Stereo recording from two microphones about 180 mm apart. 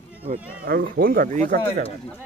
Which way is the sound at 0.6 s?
55° right (ahead or behind).